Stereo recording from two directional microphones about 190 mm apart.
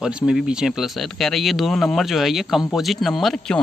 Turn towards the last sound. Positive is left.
turn(degrees=0)  # may be behind; listen again after turning